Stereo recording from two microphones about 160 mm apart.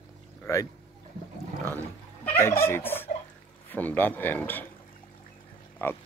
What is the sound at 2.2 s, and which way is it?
Fowl, 15° left (ahead or behind).